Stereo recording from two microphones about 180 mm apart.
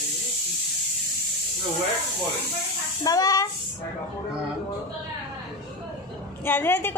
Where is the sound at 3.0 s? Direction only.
20° left (ahead or behind).